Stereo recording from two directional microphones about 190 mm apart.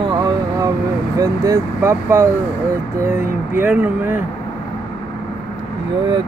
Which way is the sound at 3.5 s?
10° right (ahead or behind).